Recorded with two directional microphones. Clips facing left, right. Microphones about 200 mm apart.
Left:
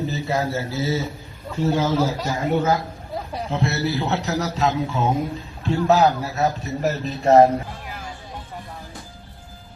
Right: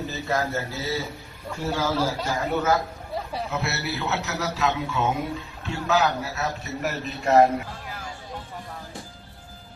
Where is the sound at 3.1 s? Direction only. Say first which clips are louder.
Left 1 dB; centre (ahead or behind).